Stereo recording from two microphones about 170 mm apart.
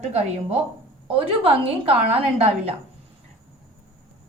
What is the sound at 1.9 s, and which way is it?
Speech, 35° right (ahead or behind).